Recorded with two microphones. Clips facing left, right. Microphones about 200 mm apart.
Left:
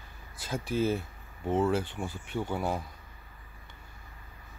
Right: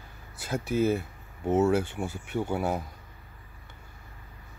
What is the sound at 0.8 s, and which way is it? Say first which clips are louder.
Speech: right 3 dB; 10° right (ahead or behind).